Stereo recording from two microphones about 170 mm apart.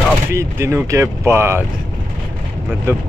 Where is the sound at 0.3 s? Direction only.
15° right (ahead or behind).